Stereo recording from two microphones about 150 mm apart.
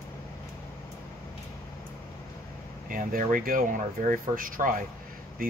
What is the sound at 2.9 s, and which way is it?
Speech, 65° right (ahead or behind).